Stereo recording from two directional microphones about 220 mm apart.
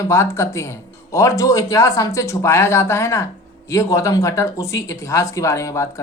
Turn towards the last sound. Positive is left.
turn(degrees=15)  # may be behind; listen again after turning